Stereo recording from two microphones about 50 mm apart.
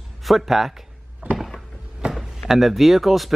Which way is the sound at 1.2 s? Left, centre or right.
Right.